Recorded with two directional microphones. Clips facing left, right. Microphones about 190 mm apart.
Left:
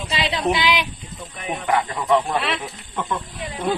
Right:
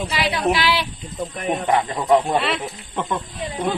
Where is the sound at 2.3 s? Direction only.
Centre (ahead or behind).